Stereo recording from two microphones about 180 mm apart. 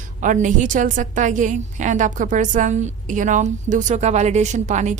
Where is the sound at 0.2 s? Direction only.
45° right (ahead or behind).